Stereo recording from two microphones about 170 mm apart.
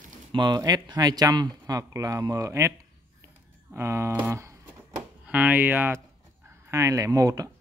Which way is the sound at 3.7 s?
15° right (ahead or behind).